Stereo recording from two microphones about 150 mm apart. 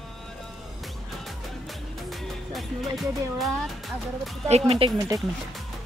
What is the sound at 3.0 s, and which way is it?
Music, centre (ahead or behind).